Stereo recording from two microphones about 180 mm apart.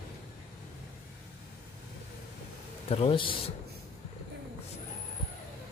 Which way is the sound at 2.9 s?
30° left (ahead or behind).